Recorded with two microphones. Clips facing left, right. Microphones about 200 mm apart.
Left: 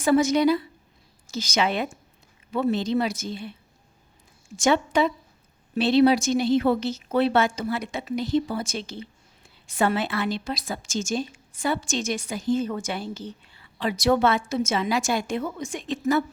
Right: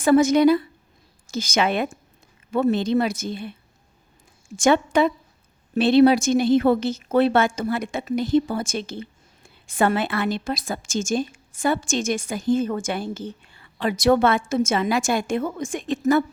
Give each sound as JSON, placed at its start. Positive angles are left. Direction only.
{"t": 0.0, "sound": "a woman's voice", "side_deg": -50}
{"t": 4.5, "sound": "a woman's voice", "side_deg": -50}